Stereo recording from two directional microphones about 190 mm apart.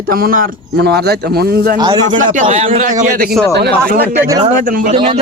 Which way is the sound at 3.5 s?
55° right (ahead or behind).